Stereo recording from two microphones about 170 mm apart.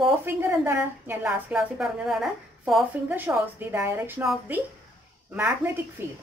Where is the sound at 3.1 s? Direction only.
10° right (ahead or behind).